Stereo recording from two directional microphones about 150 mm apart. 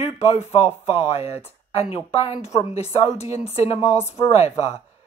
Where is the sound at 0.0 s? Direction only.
45° left (ahead or behind).